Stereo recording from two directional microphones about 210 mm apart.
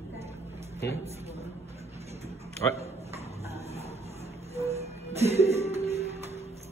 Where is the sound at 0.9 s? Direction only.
30° right (ahead or behind).